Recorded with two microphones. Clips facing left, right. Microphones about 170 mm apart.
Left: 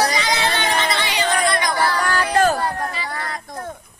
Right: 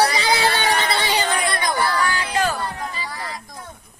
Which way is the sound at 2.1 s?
60° left (ahead or behind).